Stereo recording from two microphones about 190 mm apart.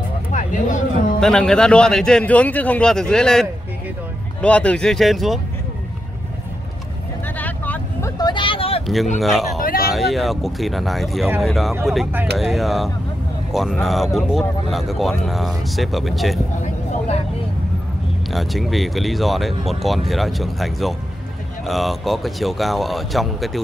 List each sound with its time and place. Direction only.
0.3 s a sound: 40° left (ahead or behind)
1.2 s speech: 5° left (ahead or behind)
7.3 s vehicle: 10° left (ahead or behind)
8.2 s vehicle: 25° left (ahead or behind)
8.8 s speech: centre (ahead or behind)
9.6 s a sound: 50° left (ahead or behind)
9.9 s speech: centre (ahead or behind)
18.3 s speech: centre (ahead or behind)